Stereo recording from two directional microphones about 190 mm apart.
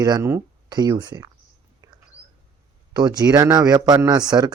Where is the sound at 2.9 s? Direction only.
20° right (ahead or behind).